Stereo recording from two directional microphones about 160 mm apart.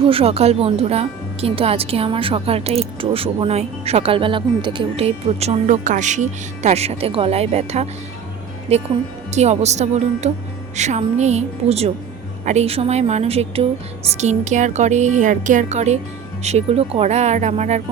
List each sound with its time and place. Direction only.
0.0 s speech: 35° right (ahead or behind)